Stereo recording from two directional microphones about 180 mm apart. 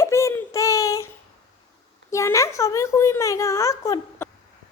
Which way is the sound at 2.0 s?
15° left (ahead or behind).